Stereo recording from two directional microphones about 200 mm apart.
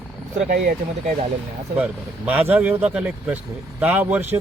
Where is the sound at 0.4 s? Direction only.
40° right (ahead or behind).